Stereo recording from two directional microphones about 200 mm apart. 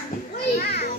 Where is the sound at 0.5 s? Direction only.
50° left (ahead or behind).